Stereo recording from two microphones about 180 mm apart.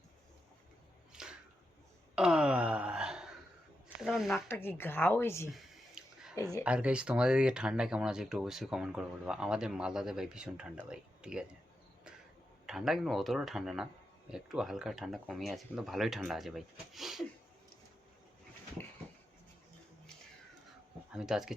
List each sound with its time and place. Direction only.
1.1 s a sound: 5° right (ahead or behind)
2.1 s wail: 5° right (ahead or behind)
4.0 s speech: centre (ahead or behind)
4.4 s speech: 10° left (ahead or behind)
5.5 s a sound: centre (ahead or behind)
6.3 s speech: 20° left (ahead or behind)
6.7 s speech: 5° right (ahead or behind)
12.6 s speech: centre (ahead or behind)
21.1 s speech: 5° right (ahead or behind)